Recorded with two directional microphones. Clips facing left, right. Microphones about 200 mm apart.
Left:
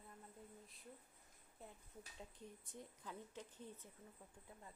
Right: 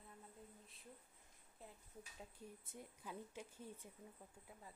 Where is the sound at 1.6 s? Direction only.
Centre (ahead or behind).